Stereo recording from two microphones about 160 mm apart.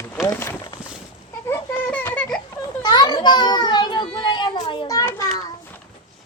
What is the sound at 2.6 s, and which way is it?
Children playing, 25° left (ahead or behind).